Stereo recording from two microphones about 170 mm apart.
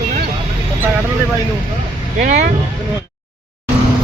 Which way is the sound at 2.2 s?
50° right (ahead or behind).